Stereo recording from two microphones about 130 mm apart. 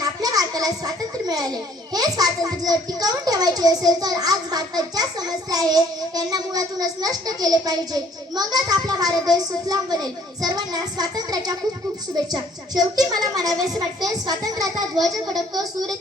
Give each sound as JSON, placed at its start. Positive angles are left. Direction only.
{"t": 0.0, "sound": "a child's voice", "side_deg": -30}
{"t": 14.9, "sound": "a child's voice", "side_deg": 0}